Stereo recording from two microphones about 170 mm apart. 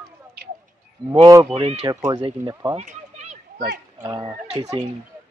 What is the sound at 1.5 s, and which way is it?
Speech, 35° right (ahead or behind).